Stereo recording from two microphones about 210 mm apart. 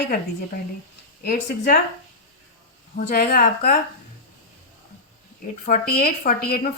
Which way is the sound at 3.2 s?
45° left (ahead or behind).